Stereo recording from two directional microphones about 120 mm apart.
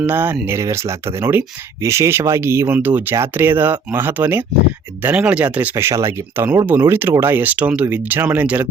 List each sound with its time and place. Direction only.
0.0 s speech: 15° right (ahead or behind)